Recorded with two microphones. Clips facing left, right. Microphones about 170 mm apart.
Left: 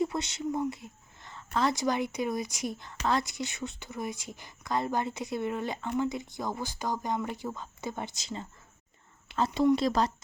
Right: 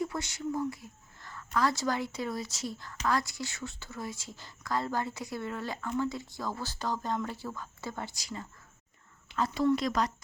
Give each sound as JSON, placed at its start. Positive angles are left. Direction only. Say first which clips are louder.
{"t": 0.0, "sound": "a sound", "louder": "left 3 dB", "side_deg": 20}
{"t": 1.5, "sound": "a woman's voice", "louder": "left 2 dB", "side_deg": 20}
{"t": 9.6, "sound": "speech", "louder": "left 3 dB", "side_deg": 25}